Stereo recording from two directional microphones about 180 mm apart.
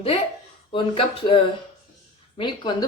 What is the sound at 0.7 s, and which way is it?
Speech, 30° left (ahead or behind).